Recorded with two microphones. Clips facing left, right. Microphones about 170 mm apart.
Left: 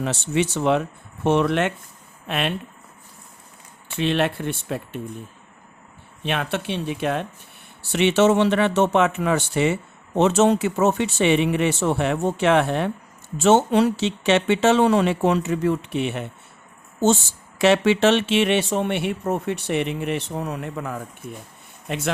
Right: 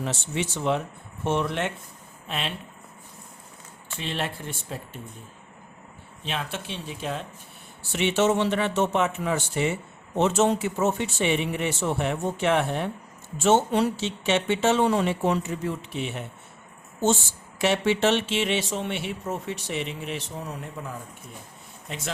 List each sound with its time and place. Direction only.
0.0 s speech: 75° left (ahead or behind)
2.2 s speech: 65° left (ahead or behind)
3.9 s speech: 70° left (ahead or behind)
6.2 s speech: 65° left (ahead or behind)
7.8 s speech: 75° left (ahead or behind)
17.6 s speech: 85° left; by 22.1 s 65° left (ahead or behind)